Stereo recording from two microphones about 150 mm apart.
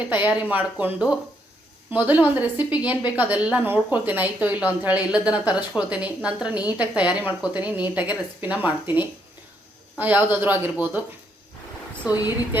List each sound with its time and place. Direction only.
0.2 s a woman's voice: 10° right (ahead or behind)
12.1 s speech: 25° left (ahead or behind)